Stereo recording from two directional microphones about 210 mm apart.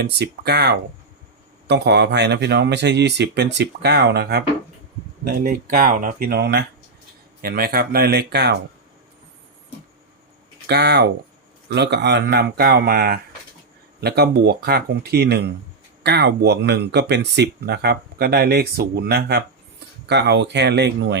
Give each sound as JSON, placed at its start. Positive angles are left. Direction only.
{"t": 0.0, "sound": "speech", "side_deg": -50}
{"t": 10.7, "sound": "speech", "side_deg": -55}